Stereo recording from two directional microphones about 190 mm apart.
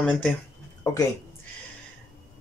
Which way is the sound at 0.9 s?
15° left (ahead or behind).